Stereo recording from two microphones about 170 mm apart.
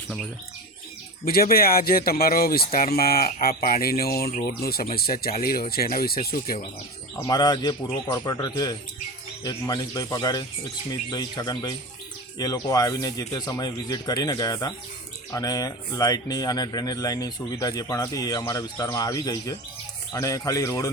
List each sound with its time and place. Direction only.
1.2 s speech: 60° left (ahead or behind)
7.3 s speech: 25° left (ahead or behind)